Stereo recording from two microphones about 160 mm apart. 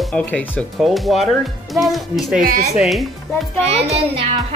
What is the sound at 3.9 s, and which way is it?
Speech, 35° right (ahead or behind).